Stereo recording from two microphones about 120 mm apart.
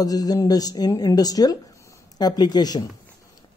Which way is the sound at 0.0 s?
30° left (ahead or behind).